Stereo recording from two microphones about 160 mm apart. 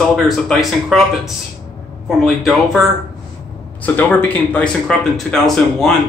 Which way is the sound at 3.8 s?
10° left (ahead or behind).